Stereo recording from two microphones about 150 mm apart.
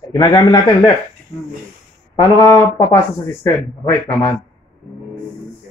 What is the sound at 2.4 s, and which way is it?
Speech, 20° left (ahead or behind).